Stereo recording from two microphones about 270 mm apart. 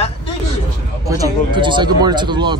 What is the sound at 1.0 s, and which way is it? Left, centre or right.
Speech, centre.